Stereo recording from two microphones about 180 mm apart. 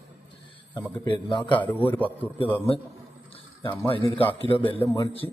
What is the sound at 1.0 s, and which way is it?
Speech, 25° left (ahead or behind).